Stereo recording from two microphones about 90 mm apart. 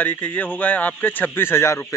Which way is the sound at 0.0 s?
20° left (ahead or behind).